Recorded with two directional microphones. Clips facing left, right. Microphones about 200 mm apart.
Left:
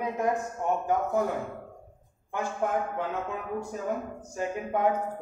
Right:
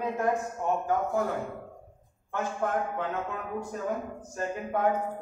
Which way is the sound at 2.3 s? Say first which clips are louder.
Left 1 dB; 10° left (ahead or behind).